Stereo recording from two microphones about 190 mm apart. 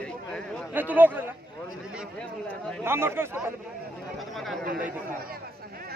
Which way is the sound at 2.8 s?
10° right (ahead or behind).